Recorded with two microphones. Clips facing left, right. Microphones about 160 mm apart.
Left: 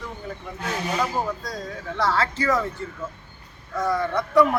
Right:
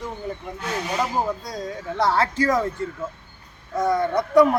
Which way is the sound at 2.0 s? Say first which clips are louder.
Right 3 dB; 20° right (ahead or behind).